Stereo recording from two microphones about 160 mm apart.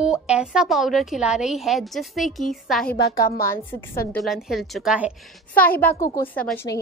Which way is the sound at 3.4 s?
15° left (ahead or behind).